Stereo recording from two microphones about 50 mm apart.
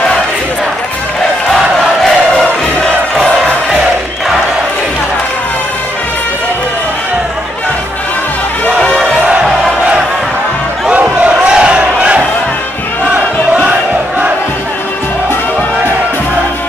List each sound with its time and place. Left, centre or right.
8.8 s a sound: centre
11.0 s crowd: right
11.4 s crowd: right